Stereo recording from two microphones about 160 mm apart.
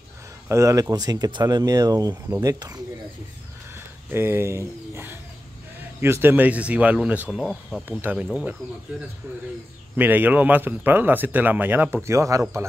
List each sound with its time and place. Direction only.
0.5 s speech: 20° right (ahead or behind)
3.7 s speech: 15° right (ahead or behind)
9.9 s speech: 10° right (ahead or behind)